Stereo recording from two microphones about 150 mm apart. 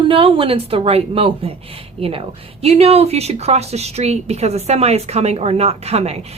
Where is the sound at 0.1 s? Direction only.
40° right (ahead or behind).